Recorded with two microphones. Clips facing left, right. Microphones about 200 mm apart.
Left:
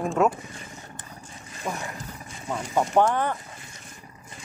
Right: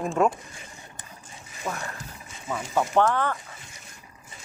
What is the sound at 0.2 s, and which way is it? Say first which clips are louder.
Speech: even; centre (ahead or behind).